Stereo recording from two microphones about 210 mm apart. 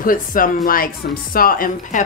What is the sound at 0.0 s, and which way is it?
Speech, 40° left (ahead or behind).